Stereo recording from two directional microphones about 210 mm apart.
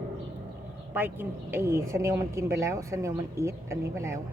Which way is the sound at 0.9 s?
10° right (ahead or behind).